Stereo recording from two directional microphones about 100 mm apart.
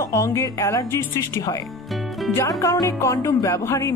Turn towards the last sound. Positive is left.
turn(degrees=30)  # may be behind; listen again after turning